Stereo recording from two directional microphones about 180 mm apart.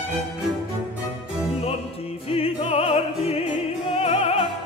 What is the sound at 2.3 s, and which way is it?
Opera, 30° left (ahead or behind).